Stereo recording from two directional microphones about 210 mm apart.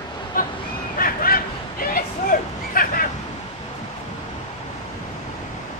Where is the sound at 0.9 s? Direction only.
45° left (ahead or behind).